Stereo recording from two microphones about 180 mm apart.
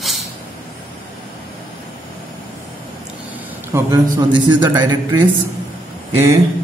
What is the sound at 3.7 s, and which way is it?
A man's voice, 15° right (ahead or behind).